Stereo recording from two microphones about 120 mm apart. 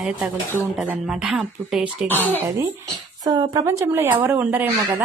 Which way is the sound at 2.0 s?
15° left (ahead or behind).